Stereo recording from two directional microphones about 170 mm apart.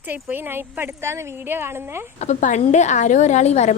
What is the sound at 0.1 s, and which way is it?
Speech, 10° right (ahead or behind).